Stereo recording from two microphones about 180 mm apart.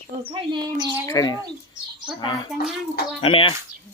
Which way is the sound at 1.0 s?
20° left (ahead or behind).